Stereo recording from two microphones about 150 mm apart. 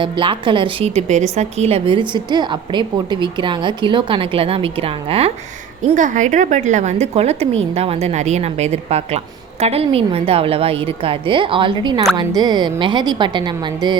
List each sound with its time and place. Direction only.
0.0 s a woman's voice: 35° right (ahead or behind)
1.0 s a woman's voice: 50° right (ahead or behind)
5.9 s a woman's voice: 55° right (ahead or behind); by 13.9 s 30° right (ahead or behind)